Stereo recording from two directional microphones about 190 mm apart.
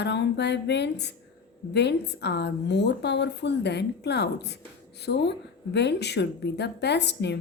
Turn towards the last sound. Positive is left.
turn(degrees=65)  # may be behind; listen again after turning